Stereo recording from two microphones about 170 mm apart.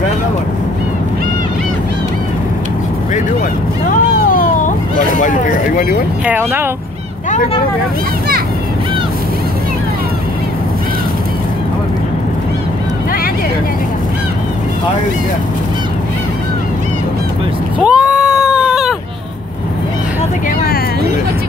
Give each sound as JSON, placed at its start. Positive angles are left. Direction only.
{"t": 4.3, "sound": "vehicle", "side_deg": 55}
{"t": 6.2, "sound": "speech", "side_deg": -10}
{"t": 17.7, "sound": "a sound", "side_deg": -5}